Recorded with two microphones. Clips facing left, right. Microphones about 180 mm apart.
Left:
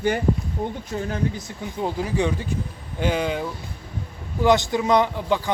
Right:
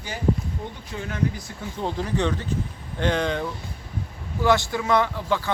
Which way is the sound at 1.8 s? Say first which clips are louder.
Left 2 dB; 10° left (ahead or behind).